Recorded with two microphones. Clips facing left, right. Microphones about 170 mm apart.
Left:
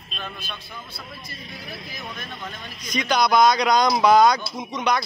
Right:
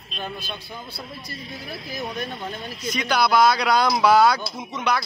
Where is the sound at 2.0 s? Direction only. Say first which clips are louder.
Right 8 dB; 30° right (ahead or behind).